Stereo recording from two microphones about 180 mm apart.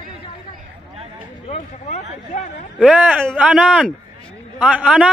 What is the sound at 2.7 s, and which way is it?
A man's voice, 5° right (ahead or behind).